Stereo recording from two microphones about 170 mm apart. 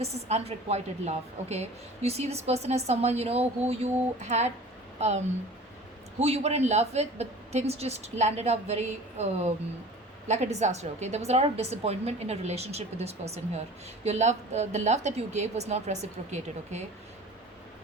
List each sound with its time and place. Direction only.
0.0 s a woman's voice: 40° right (ahead or behind)